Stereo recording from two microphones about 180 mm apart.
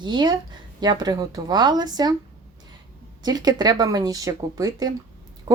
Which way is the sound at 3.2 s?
20° right (ahead or behind).